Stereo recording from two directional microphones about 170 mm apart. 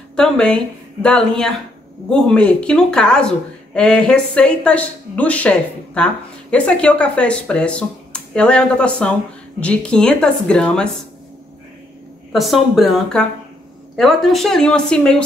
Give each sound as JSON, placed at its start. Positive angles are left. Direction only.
{"t": 0.1, "sound": "speech", "side_deg": 5}
{"t": 2.0, "sound": "a woman's voice", "side_deg": 5}
{"t": 12.3, "sound": "speech", "side_deg": 0}